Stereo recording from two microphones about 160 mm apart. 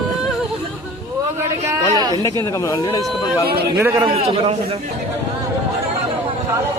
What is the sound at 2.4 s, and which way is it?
Speech, 20° left (ahead or behind).